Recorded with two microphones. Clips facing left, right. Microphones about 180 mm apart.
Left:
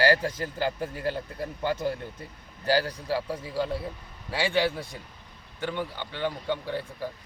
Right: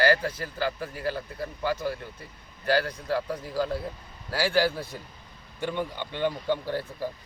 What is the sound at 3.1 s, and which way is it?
Speech, centre (ahead or behind).